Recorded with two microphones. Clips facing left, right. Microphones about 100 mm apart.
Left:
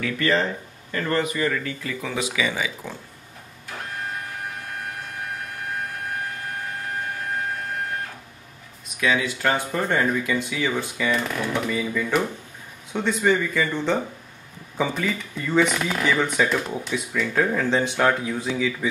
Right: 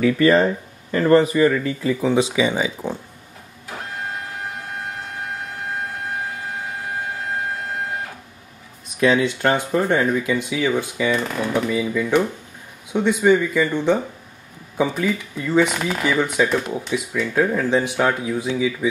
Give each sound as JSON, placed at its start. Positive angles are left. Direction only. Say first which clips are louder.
{"t": 0.9, "sound": "speech", "louder": "right 9 dB", "side_deg": -30}
{"t": 9.0, "sound": "speech", "louder": "right 6 dB", "side_deg": -30}
{"t": 9.7, "sound": "speech", "louder": "right 4 dB", "side_deg": -10}